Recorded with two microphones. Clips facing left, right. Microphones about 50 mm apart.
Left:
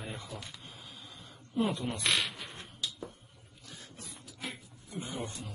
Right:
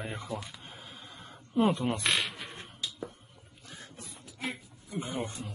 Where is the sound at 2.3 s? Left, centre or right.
Centre.